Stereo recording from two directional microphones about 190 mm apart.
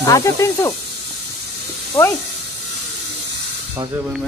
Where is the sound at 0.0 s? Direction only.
15° left (ahead or behind).